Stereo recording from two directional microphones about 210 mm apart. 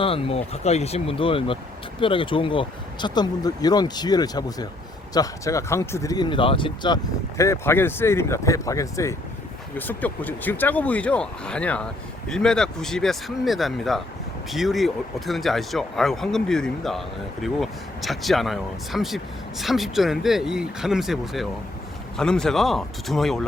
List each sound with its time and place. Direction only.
0.0 s speech: 25° left (ahead or behind); by 23.5 s centre (ahead or behind)